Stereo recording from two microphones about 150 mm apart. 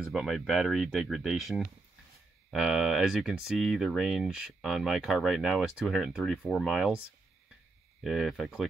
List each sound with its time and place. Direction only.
0.0 s speech: centre (ahead or behind)
8.0 s speech: centre (ahead or behind)